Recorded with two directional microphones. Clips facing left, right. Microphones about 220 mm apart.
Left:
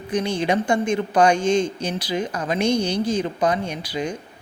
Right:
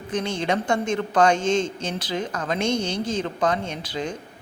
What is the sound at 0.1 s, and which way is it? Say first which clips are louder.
A woman's voice: left 3 dB; 15° left (ahead or behind).